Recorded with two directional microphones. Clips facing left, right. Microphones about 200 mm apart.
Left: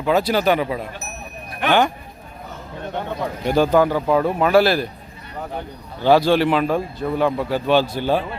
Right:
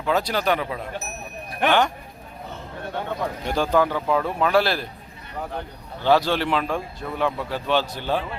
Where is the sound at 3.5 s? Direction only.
5° left (ahead or behind).